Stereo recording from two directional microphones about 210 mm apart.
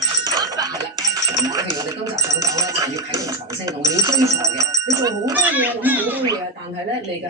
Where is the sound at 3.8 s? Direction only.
15° right (ahead or behind).